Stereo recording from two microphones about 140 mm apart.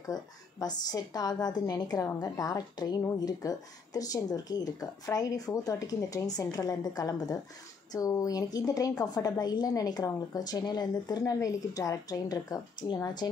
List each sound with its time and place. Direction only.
0.0 s speech: 25° left (ahead or behind)